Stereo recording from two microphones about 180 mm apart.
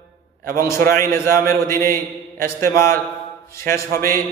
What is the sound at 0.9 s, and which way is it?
A man's voice, 50° right (ahead or behind).